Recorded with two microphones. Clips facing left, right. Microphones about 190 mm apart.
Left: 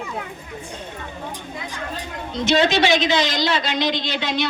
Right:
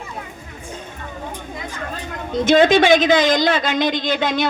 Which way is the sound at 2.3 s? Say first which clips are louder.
Right 5 dB; 50° right (ahead or behind).